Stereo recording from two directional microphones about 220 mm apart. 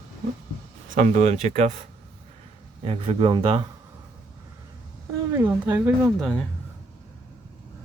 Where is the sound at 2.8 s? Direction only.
25° right (ahead or behind).